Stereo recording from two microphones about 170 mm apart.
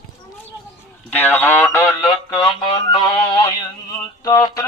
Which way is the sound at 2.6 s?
25° left (ahead or behind).